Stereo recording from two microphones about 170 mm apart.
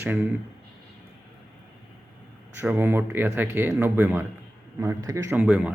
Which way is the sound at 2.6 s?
10° right (ahead or behind).